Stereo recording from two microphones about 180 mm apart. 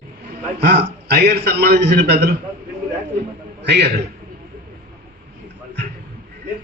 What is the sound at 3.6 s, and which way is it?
Speech, 70° right (ahead or behind).